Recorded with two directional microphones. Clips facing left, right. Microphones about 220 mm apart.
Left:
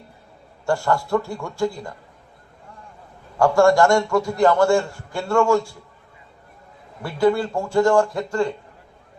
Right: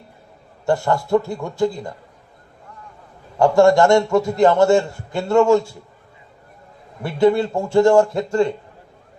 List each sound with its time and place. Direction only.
0.6 s a man's voice: 20° right (ahead or behind)
3.3 s a man's voice: 20° right (ahead or behind)
7.0 s a man's voice: 25° right (ahead or behind)